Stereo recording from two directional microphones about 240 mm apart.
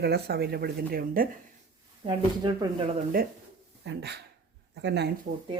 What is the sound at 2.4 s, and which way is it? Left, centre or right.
Speech, centre.